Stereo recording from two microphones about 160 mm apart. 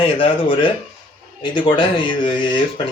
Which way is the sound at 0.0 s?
30° left (ahead or behind).